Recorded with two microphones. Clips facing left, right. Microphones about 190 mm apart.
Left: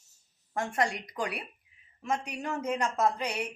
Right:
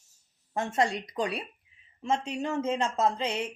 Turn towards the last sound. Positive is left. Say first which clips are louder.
# right 1 dB
turn(degrees=-25)  # may be behind; listen again after turning